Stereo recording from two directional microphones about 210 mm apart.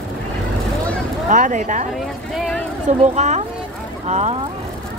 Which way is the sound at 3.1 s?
30° right (ahead or behind).